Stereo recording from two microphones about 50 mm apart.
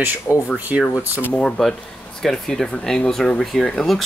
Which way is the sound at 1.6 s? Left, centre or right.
Centre.